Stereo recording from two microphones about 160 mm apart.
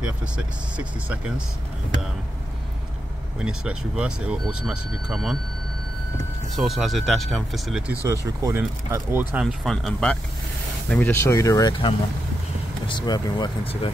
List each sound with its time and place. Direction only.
0.0 s speech: 10° right (ahead or behind)
3.3 s speech: 5° right (ahead or behind)
6.5 s speech: centre (ahead or behind)
8.4 s speech: 20° right (ahead or behind)
9.3 s speech: 5° right (ahead or behind); by 13.9 s 30° left (ahead or behind)